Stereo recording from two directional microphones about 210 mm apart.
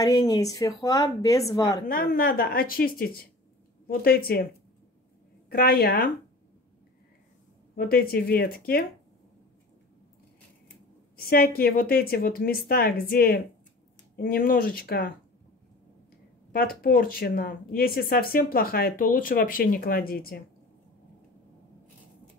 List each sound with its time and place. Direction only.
0.0 s a woman's voice: 15° left (ahead or behind)
1.9 s speech: 45° left (ahead or behind)
5.5 s speech: 45° left (ahead or behind)
7.7 s speech: 45° left (ahead or behind)
11.1 s speech: 45° left (ahead or behind)
16.5 s speech: 45° left (ahead or behind)